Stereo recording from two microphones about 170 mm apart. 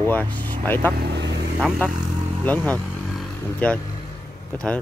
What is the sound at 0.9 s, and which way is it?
Speech, 75° right (ahead or behind).